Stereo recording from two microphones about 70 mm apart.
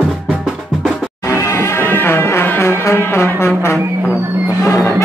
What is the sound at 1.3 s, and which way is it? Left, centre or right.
Music, left.